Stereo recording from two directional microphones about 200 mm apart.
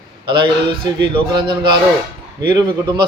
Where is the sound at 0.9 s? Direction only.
20° right (ahead or behind).